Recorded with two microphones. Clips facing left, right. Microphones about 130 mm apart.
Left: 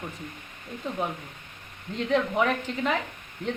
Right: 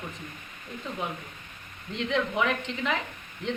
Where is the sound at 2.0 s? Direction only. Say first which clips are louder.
Left 3 dB; 40° left (ahead or behind).